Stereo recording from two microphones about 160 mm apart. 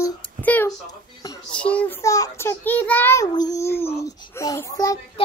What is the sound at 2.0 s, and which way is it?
Child singing, 20° left (ahead or behind).